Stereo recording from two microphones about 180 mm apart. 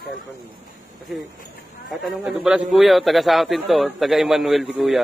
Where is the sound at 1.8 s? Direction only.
Centre (ahead or behind).